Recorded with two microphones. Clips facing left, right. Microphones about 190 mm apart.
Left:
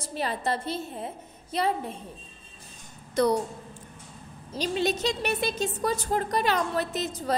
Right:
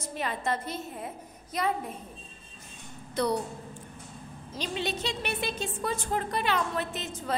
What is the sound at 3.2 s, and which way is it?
Speech, 45° left (ahead or behind).